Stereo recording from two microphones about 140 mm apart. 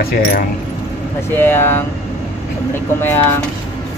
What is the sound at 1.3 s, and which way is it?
Speech, 15° left (ahead or behind).